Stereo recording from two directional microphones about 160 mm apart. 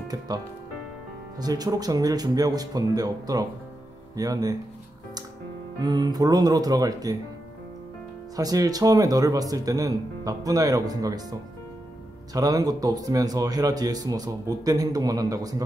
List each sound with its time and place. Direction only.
1.4 s speech: 25° right (ahead or behind)
5.8 s speech: 25° right (ahead or behind)
8.4 s speech: 25° right (ahead or behind)